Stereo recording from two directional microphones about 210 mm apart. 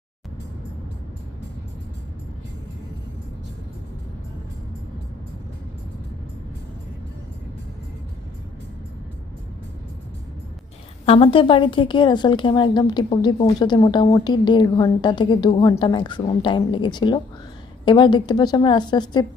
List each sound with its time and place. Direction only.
11.0 s a woman's voice: 25° left (ahead or behind)